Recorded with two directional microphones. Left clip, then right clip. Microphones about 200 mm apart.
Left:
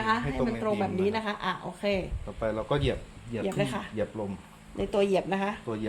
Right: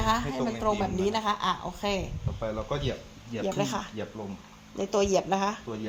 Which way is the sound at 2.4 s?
50° left (ahead or behind).